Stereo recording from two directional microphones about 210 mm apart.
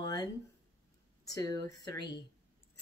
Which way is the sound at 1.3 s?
15° left (ahead or behind).